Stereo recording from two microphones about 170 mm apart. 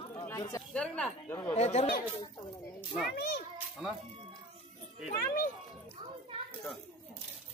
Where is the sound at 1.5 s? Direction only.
40° left (ahead or behind).